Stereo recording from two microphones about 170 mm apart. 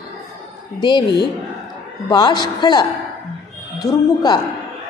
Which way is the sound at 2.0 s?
25° left (ahead or behind).